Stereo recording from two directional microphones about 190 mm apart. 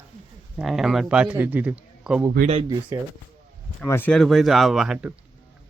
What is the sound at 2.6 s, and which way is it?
Speech, 20° right (ahead or behind).